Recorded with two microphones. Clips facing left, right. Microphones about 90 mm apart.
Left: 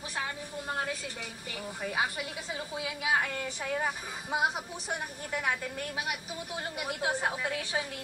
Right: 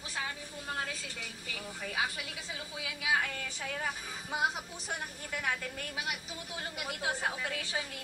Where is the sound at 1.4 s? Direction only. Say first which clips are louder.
Left 5 dB; 30° left (ahead or behind).